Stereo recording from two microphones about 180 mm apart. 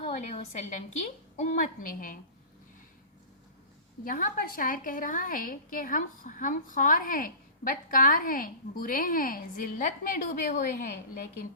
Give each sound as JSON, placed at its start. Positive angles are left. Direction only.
{"t": 0.0, "sound": "a woman's voice", "side_deg": 35}
{"t": 1.4, "sound": "a woman's voice", "side_deg": 45}
{"t": 4.0, "sound": "a woman's voice", "side_deg": 50}